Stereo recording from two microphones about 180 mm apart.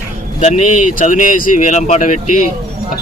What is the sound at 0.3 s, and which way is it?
Speech, 40° left (ahead or behind).